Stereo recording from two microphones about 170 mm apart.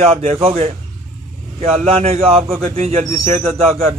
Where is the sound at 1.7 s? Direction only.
40° right (ahead or behind).